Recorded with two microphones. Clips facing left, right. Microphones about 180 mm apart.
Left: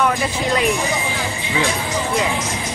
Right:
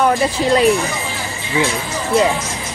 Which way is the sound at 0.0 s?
35° right (ahead or behind).